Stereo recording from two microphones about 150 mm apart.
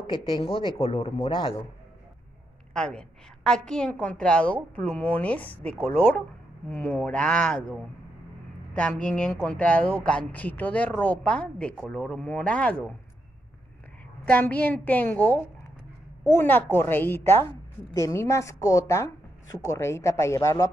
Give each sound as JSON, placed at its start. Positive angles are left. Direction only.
{"t": 0.0, "sound": "speech", "side_deg": 35}
{"t": 2.7, "sound": "a woman's voice", "side_deg": 5}
{"t": 14.2, "sound": "speech", "side_deg": 10}
{"t": 16.3, "sound": "a woman's voice", "side_deg": 15}